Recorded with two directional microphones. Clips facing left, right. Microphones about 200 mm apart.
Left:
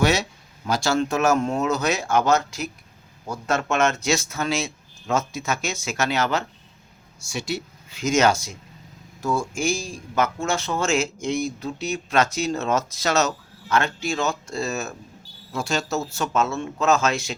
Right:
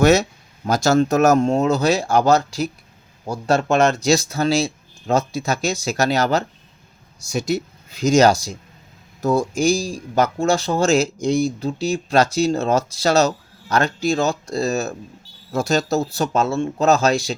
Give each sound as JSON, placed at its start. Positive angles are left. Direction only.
{"t": 0.0, "sound": "speech", "side_deg": -45}